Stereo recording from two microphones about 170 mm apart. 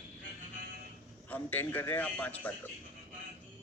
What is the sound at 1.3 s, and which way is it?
Speech, 10° left (ahead or behind).